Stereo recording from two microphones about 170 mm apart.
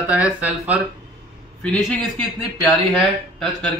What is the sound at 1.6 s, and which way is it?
Speech, 5° left (ahead or behind).